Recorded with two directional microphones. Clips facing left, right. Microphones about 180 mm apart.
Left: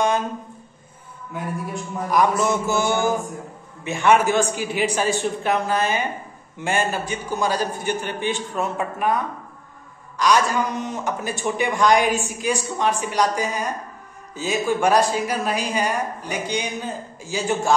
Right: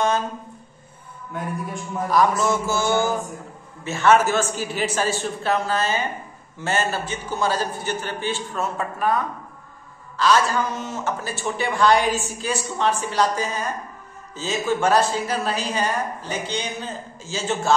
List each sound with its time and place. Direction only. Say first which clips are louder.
2.0 s a woman's voice: even; 20° left (ahead or behind)